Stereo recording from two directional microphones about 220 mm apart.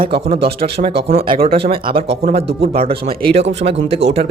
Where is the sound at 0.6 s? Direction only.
30° right (ahead or behind).